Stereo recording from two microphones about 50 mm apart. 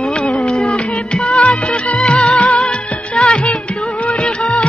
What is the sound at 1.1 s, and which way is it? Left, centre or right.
Music, left.